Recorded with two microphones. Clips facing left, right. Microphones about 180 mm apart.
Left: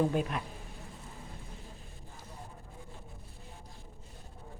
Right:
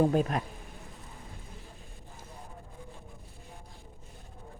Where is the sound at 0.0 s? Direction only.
40° right (ahead or behind).